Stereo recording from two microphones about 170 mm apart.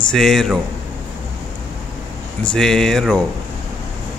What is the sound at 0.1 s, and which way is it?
Speech, centre (ahead or behind).